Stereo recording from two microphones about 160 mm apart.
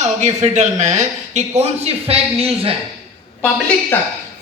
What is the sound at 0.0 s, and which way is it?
Speech, 45° right (ahead or behind).